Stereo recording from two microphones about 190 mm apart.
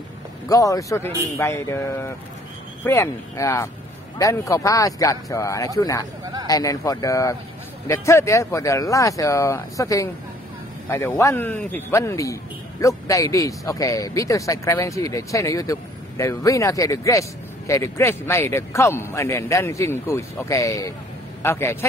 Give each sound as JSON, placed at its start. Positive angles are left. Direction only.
{"t": 0.5, "sound": "speech", "side_deg": 15}
{"t": 11.1, "sound": "a man's voice", "side_deg": 15}